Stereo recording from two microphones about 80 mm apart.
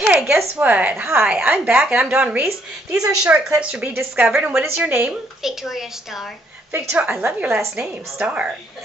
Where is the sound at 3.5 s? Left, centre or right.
Centre.